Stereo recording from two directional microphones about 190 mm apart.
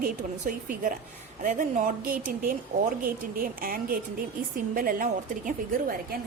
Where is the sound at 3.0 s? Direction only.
50° right (ahead or behind).